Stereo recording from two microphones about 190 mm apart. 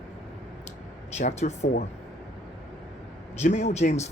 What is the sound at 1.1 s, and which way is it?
Speech, 35° left (ahead or behind).